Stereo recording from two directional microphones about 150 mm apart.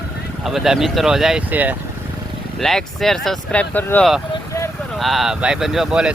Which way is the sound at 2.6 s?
5° left (ahead or behind).